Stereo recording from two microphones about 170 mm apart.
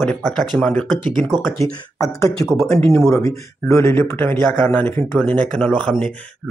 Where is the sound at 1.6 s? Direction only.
20° left (ahead or behind).